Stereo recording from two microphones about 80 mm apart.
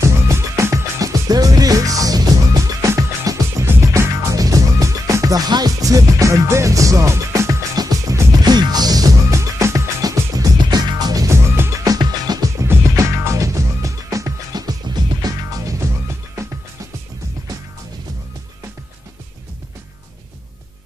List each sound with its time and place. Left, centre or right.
0.0 s music: right
8.5 s music: right
9.3 s music: right
10.6 s music: right
12.0 s music: right
12.5 s music: right
14.5 s music: right